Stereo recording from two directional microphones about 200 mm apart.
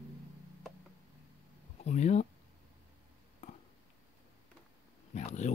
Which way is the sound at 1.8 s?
35° left (ahead or behind).